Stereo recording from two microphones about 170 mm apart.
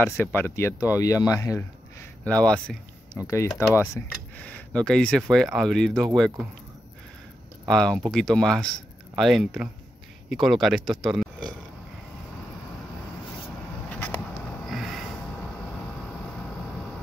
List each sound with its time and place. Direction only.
0.0 s speech: 10° left (ahead or behind)
2.2 s speech: 5° left (ahead or behind)
3.2 s speech: 15° left (ahead or behind)
7.6 s speech: 5° left (ahead or behind)
13.8 s vehicle: 10° left (ahead or behind)
14.7 s a sound: centre (ahead or behind)